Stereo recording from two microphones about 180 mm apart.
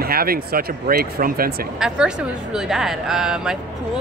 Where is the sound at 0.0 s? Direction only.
55° right (ahead or behind).